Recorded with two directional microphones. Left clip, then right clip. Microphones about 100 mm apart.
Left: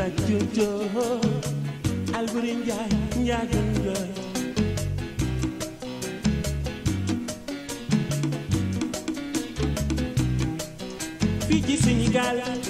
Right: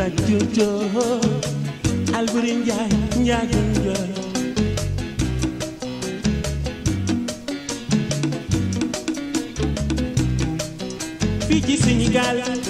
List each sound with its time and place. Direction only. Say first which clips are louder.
0.0 s music: right 5 dB; 30° right (ahead or behind)
7.9 s music: right 4 dB; 40° right (ahead or behind)